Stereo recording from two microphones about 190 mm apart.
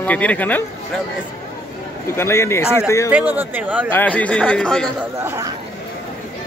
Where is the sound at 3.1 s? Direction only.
10° right (ahead or behind).